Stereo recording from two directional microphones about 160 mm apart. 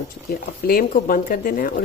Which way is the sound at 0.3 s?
65° left (ahead or behind).